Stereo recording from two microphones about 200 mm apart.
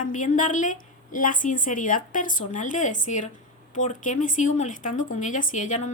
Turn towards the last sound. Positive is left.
turn(degrees=35)  # may be behind; listen again after turning